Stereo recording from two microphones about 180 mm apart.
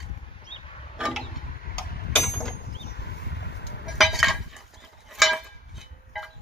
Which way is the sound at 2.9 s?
70° left (ahead or behind).